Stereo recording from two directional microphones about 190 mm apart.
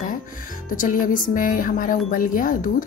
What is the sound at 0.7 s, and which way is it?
Speech, 45° left (ahead or behind).